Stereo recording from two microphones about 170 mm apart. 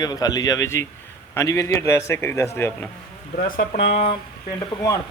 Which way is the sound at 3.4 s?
55° left (ahead or behind).